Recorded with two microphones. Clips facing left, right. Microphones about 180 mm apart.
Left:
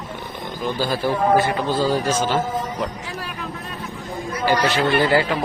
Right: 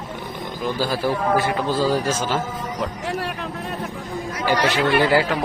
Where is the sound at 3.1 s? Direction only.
70° right (ahead or behind).